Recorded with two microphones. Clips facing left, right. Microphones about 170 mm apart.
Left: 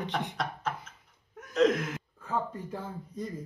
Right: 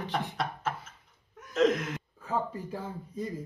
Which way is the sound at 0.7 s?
5° right (ahead or behind).